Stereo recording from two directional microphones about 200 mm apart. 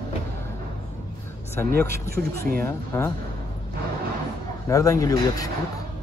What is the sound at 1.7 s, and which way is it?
Speech, 50° right (ahead or behind).